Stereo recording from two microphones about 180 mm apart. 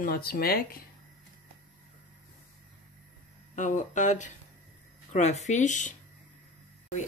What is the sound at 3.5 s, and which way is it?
Speech, 45° left (ahead or behind).